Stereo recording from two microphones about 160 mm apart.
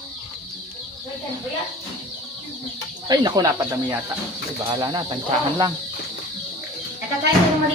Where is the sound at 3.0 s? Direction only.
25° right (ahead or behind).